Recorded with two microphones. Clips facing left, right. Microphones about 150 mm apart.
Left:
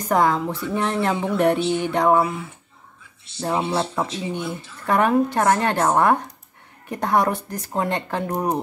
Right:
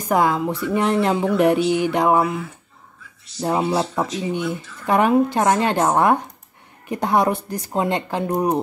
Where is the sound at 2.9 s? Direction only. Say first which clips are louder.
Right 7 dB; 25° left (ahead or behind).